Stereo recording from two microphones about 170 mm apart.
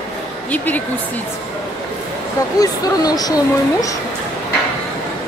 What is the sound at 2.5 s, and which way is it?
Speech, 20° left (ahead or behind).